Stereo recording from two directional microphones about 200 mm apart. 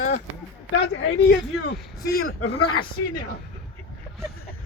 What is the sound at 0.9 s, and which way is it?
Speech, 55° left (ahead or behind).